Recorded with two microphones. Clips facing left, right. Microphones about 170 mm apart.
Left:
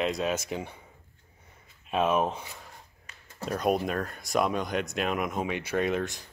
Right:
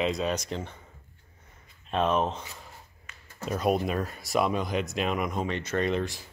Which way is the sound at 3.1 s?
35° left (ahead or behind).